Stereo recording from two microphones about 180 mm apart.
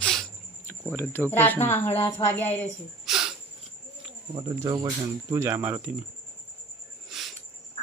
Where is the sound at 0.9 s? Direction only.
10° left (ahead or behind).